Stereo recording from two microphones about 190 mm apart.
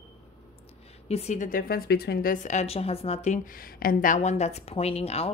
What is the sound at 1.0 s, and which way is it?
A woman's voice, 35° left (ahead or behind).